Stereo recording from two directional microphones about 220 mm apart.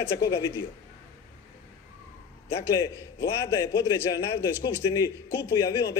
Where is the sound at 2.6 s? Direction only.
15° left (ahead or behind).